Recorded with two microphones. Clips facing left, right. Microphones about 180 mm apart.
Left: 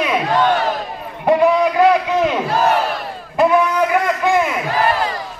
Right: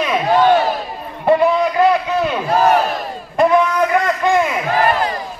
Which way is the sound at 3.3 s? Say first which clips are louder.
Right 1 dB; 5° left (ahead or behind).